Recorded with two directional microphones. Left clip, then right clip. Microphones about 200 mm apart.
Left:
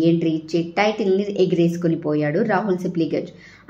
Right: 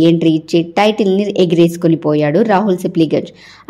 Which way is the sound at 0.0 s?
40° right (ahead or behind).